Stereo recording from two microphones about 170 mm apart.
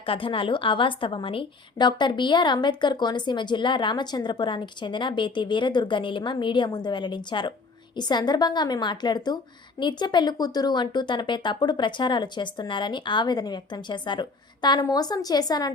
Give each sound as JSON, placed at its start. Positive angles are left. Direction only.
{"t": 0.0, "sound": "a woman's voice", "side_deg": 30}